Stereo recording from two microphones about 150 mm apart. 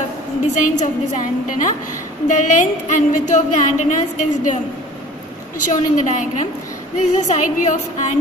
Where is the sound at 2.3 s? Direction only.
55° left (ahead or behind).